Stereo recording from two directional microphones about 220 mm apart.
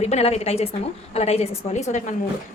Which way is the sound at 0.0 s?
30° left (ahead or behind).